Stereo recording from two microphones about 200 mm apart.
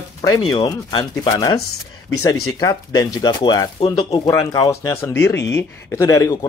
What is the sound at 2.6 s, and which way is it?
Speech, 15° left (ahead or behind).